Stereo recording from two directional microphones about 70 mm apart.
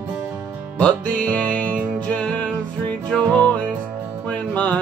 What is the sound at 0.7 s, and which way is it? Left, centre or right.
Music, centre.